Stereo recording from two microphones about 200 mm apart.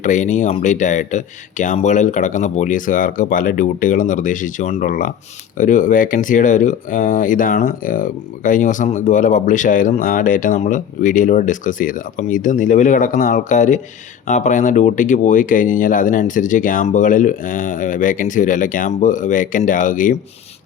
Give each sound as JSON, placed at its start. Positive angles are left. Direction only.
{"t": 0.0, "sound": "speech", "side_deg": 40}